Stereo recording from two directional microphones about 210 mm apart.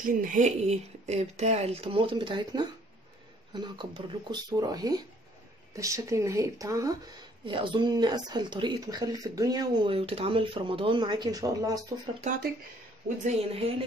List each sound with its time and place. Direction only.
0.0 s speech: 40° right (ahead or behind); by 11.8 s 15° right (ahead or behind)
13.2 s speech: 30° right (ahead or behind)